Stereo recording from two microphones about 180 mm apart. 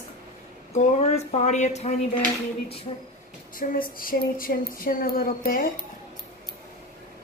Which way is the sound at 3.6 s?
50° left (ahead or behind).